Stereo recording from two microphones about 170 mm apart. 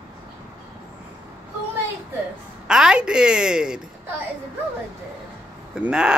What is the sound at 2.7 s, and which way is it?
Speech, 5° right (ahead or behind).